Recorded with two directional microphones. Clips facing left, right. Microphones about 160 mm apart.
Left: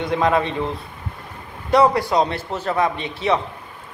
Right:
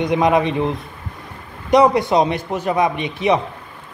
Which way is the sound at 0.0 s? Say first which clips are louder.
Right 3 dB; 15° right (ahead or behind).